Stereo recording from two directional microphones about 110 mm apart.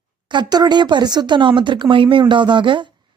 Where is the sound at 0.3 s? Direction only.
40° right (ahead or behind).